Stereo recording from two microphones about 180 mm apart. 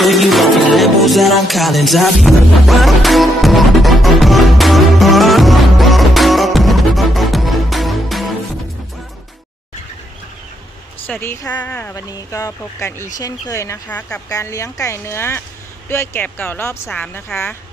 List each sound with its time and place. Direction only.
0.0 s music: centre (ahead or behind)
11.0 s a woman's voice: 10° left (ahead or behind)